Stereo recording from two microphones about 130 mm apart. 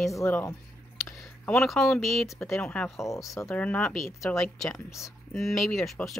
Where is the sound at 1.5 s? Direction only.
Centre (ahead or behind).